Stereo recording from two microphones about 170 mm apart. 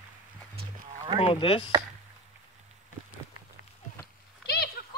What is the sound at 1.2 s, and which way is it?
Speech, 30° left (ahead or behind).